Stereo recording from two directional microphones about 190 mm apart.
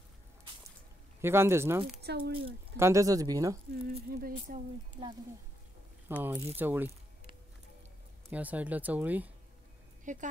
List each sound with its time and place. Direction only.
1.2 s speech: 10° right (ahead or behind)
2.0 s speech: 60° right (ahead or behind)
2.8 s speech: 15° right (ahead or behind)
3.8 s a sound: 50° right (ahead or behind)
6.0 s speech: 10° right (ahead or behind)
8.3 s speech: 10° right (ahead or behind)
10.1 s a woman's voice: 40° right (ahead or behind)